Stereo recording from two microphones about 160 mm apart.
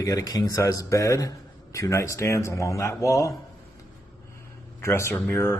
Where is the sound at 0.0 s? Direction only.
20° left (ahead or behind).